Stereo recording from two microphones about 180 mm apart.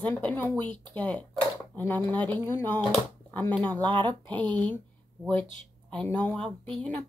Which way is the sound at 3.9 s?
25° right (ahead or behind).